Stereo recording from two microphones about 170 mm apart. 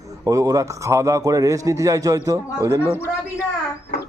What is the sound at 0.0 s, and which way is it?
A man's voice, 20° right (ahead or behind).